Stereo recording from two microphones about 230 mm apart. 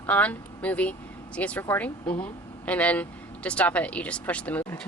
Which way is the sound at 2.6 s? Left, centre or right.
Centre.